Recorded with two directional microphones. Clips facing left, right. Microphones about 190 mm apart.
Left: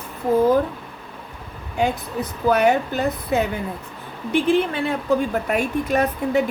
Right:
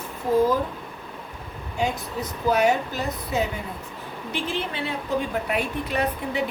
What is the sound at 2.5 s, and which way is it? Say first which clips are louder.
Speech: left 3 dB; 60° left (ahead or behind).